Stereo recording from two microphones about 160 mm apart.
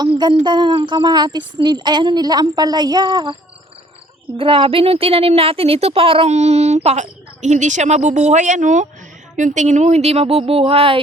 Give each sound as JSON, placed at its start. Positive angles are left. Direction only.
{"t": 0.0, "sound": "speech", "side_deg": -25}
{"t": 4.4, "sound": "speech", "side_deg": -35}